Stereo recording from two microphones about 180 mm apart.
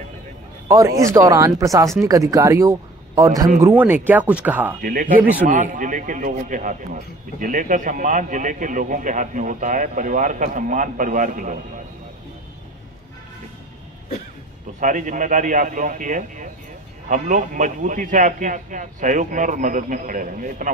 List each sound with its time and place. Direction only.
0.7 s speech: 15° right (ahead or behind)
4.8 s a man's voice: 50° right (ahead or behind)
14.8 s a man's voice: 45° right (ahead or behind)